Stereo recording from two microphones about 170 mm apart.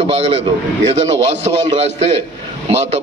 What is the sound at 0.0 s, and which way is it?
Speech, 35° right (ahead or behind).